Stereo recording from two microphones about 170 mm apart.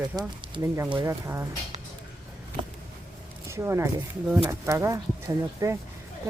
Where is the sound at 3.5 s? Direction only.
15° right (ahead or behind).